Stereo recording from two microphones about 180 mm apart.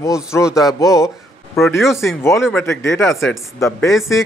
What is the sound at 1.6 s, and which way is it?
Speech, centre (ahead or behind).